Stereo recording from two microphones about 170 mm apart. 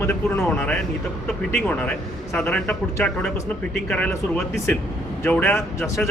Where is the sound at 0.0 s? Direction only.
15° left (ahead or behind).